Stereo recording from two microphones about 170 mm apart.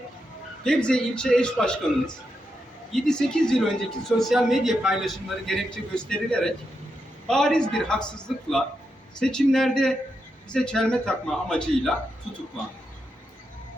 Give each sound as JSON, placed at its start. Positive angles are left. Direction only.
{"t": 0.6, "sound": "speech", "side_deg": 5}